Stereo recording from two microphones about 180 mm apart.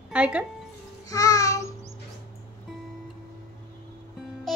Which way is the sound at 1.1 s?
20° left (ahead or behind).